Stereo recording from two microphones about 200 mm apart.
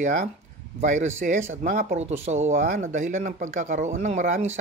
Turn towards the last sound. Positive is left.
turn(degrees=-35)  # may be behind; listen again after turning